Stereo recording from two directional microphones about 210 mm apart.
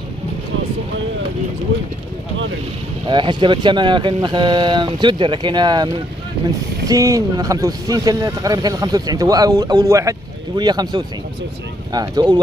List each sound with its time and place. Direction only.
3.1 s speech: 20° right (ahead or behind)
6.9 s speech: 15° right (ahead or behind)